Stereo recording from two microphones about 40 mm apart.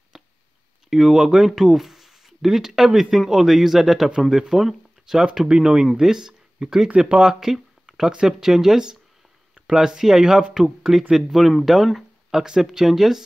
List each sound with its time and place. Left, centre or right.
0.1 s clicking: centre
0.8 s speech: centre
5.5 s speech: right
7.8 s a sound: centre
8.3 s speech: centre